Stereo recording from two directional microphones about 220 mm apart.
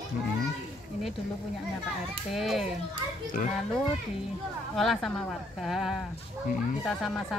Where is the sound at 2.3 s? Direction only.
Centre (ahead or behind).